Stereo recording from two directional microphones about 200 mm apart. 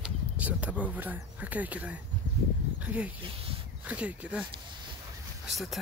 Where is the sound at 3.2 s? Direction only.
25° right (ahead or behind).